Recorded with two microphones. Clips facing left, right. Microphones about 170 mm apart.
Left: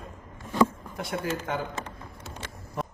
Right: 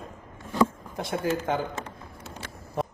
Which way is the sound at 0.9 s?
25° right (ahead or behind).